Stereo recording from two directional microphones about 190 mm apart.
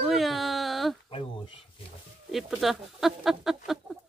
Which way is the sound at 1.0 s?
25° left (ahead or behind).